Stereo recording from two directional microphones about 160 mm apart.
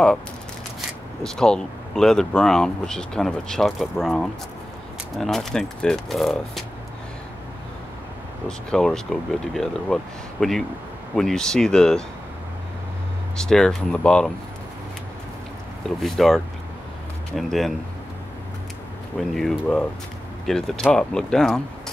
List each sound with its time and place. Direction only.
0.7 s speech: 5° left (ahead or behind)
8.5 s speech: 5° left (ahead or behind)
13.4 s speech: 5° left (ahead or behind)
16.0 s speech: centre (ahead or behind)
19.1 s speech: centre (ahead or behind)